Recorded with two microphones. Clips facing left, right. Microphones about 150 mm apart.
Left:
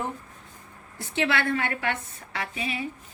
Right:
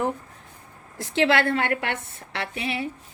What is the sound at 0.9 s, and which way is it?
A woman's voice, 80° right.